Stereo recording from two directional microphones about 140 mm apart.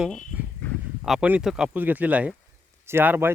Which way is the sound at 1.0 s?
5° right (ahead or behind).